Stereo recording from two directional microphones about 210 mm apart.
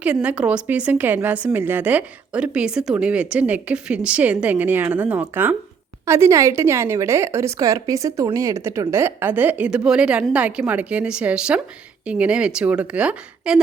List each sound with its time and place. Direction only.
0.0 s a woman's voice: 5° right (ahead or behind)